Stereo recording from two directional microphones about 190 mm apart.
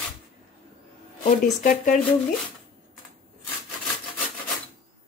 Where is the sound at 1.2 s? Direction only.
45° left (ahead or behind).